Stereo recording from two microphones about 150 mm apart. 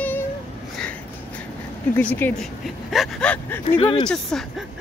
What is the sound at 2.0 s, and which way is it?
Gasp, 10° left (ahead or behind).